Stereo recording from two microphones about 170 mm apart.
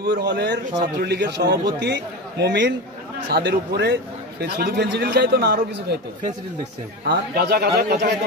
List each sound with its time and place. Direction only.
0.0 s a man's voice: 75° right (ahead or behind)
3.3 s a man's voice: 70° right (ahead or behind)
7.1 s a man's voice: 70° right (ahead or behind)